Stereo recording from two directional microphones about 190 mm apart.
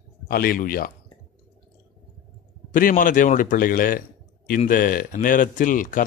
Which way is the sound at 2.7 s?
45° left (ahead or behind).